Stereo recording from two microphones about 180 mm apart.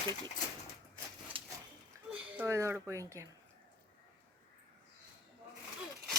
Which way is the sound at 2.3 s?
15° right (ahead or behind).